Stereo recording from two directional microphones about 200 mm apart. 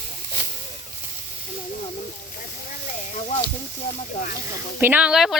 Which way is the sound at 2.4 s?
40° left (ahead or behind).